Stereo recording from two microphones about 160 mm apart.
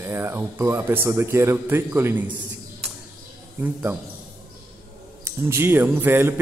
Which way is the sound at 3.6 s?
15° right (ahead or behind).